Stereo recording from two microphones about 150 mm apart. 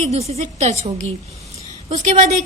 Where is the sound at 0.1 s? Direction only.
45° right (ahead or behind).